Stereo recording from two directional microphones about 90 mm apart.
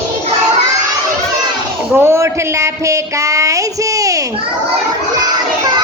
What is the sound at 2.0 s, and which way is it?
Speech, 30° right (ahead or behind).